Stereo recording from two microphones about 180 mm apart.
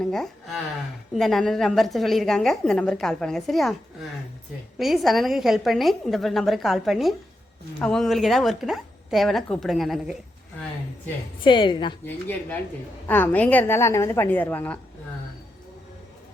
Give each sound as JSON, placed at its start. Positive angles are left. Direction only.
{"t": 0.0, "sound": "a woman's voice", "side_deg": 5}
{"t": 4.8, "sound": "a woman's voice", "side_deg": 0}
{"t": 11.4, "sound": "a woman's voice", "side_deg": 25}
{"t": 12.0, "sound": "a woman's voice", "side_deg": 10}